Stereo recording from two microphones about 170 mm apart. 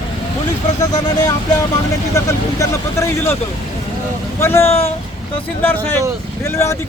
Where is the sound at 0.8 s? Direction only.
20° left (ahead or behind).